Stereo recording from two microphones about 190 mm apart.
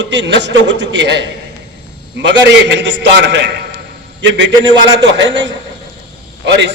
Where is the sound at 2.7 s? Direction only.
70° right (ahead or behind).